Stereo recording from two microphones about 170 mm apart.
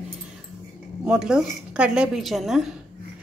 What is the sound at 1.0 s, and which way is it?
A woman's voice, 5° right (ahead or behind).